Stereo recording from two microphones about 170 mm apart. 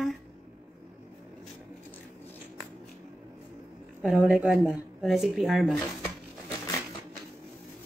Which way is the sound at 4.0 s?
5° right (ahead or behind).